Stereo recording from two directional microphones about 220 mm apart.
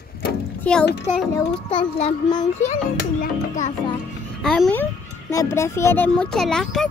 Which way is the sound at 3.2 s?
35° left (ahead or behind).